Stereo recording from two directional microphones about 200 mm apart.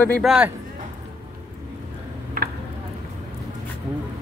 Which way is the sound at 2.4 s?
50° right (ahead or behind).